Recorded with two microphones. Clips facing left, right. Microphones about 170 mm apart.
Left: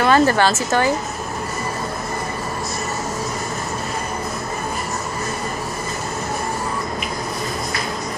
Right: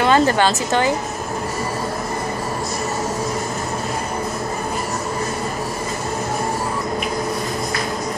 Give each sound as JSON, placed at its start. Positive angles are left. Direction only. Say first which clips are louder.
{"t": 0.0, "sound": "a woman's voice", "louder": "even", "side_deg": -20}